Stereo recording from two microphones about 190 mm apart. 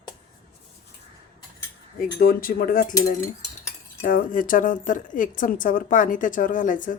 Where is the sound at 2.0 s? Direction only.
50° left (ahead or behind).